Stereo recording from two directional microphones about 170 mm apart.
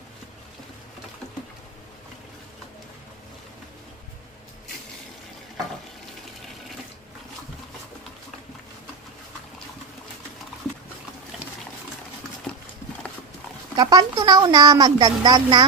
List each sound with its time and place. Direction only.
12.5 s clip-clop: 5° left (ahead or behind)
13.7 s a woman's voice: 25° right (ahead or behind)